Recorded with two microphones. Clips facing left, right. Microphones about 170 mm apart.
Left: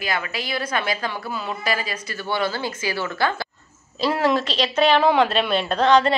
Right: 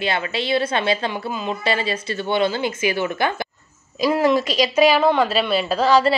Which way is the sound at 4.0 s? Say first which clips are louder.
Right 3 dB; 5° right (ahead or behind).